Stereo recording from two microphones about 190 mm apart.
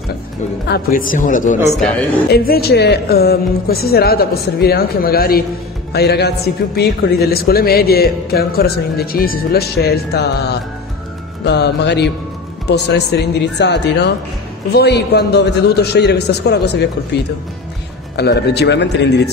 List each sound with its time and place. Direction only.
0.7 s a woman's voice: 50° left (ahead or behind)
2.2 s speech: 55° left (ahead or behind)
11.4 s speech: 60° left (ahead or behind)
18.1 s speech: 60° left (ahead or behind)